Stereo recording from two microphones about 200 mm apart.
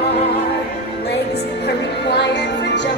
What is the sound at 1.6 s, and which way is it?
Music, 60° left (ahead or behind).